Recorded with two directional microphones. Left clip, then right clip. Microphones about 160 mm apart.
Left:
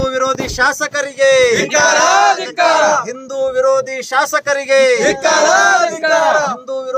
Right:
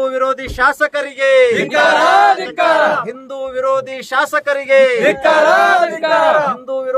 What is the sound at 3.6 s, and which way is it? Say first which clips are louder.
Speech: left 2 dB; 5° left (ahead or behind).